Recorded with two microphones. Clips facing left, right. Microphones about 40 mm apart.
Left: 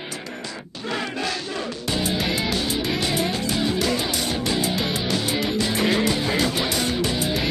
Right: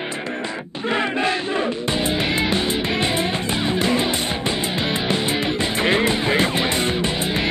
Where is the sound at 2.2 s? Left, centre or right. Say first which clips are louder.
Right 3 dB; right.